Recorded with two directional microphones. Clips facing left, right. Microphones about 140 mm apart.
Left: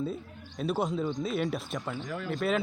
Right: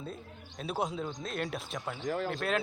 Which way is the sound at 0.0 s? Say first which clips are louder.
Left 8 dB; centre (ahead or behind).